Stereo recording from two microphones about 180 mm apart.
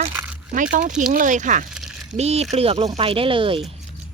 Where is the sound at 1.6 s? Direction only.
Centre (ahead or behind).